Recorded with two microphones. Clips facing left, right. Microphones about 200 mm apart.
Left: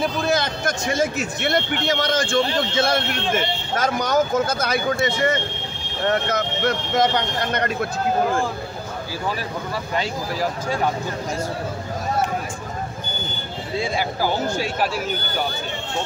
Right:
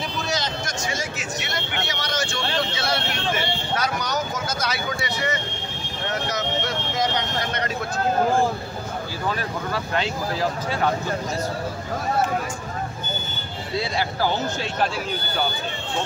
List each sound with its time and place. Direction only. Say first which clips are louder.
0.0 s a sound: left 6 dB; 55° left (ahead or behind)
1.9 s speech: left 7 dB; 50° left (ahead or behind)
13.9 s a man's voice: left 1 dB; 10° left (ahead or behind)